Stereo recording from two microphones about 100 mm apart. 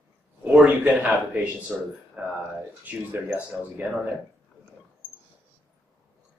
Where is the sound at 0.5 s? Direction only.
10° right (ahead or behind).